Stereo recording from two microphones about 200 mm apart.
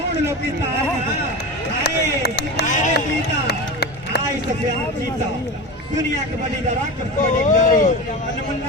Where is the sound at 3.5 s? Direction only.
55° left (ahead or behind).